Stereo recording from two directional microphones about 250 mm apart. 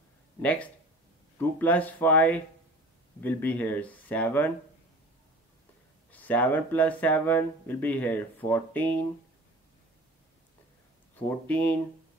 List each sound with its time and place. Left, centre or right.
0.4 s speech: centre
6.1 s speech: centre
11.1 s speech: centre